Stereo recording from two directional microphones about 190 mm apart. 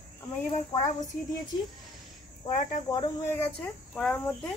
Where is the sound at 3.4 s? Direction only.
5° left (ahead or behind).